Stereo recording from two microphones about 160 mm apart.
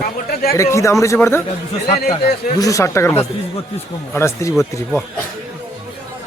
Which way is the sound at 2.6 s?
20° left (ahead or behind).